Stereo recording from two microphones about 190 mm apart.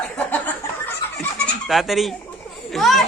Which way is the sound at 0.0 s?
10° left (ahead or behind).